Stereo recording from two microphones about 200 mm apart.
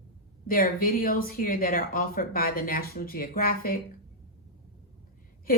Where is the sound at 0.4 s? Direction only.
45° left (ahead or behind).